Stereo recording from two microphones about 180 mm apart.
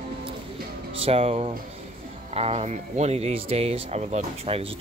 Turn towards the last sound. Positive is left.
turn(degrees=-35)  # may be behind; listen again after turning